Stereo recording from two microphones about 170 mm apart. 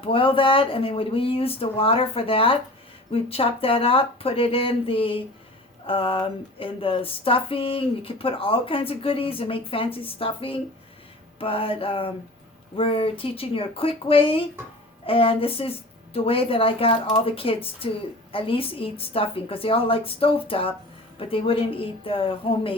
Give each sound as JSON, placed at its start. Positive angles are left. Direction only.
{"t": 0.0, "sound": "speech", "side_deg": 30}